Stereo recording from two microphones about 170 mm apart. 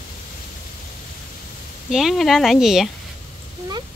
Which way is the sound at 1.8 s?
Centre (ahead or behind).